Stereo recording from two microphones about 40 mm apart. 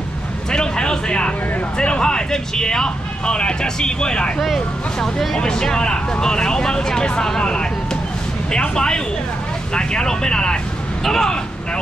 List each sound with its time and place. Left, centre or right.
0.5 s a sound: left
1.8 s speech: left
5.4 s speech: centre